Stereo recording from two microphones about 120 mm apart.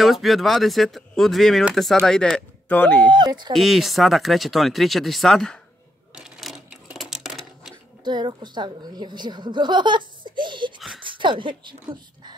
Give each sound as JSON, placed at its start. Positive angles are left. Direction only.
{"t": 0.0, "sound": "speech", "side_deg": 0}
{"t": 3.2, "sound": "a woman's voice", "side_deg": -40}
{"t": 3.5, "sound": "speech", "side_deg": 0}
{"t": 6.1, "sound": "cash register", "side_deg": -5}
{"t": 8.0, "sound": "a woman's voice", "side_deg": -40}